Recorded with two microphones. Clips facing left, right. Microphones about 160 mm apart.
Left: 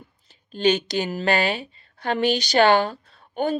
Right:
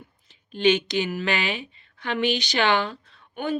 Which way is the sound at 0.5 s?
40° left (ahead or behind).